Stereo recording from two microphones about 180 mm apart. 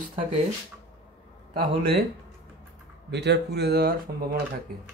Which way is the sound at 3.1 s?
70° right (ahead or behind).